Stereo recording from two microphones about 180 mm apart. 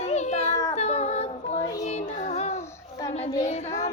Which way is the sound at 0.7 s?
35° left (ahead or behind).